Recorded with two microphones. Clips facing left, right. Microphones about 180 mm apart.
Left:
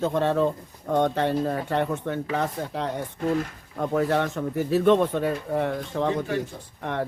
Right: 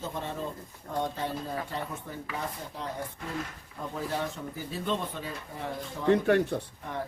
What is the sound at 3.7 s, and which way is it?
Speech, 70° left (ahead or behind).